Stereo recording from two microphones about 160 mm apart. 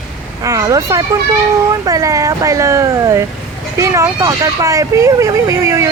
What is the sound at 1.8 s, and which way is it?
Speech, 20° right (ahead or behind).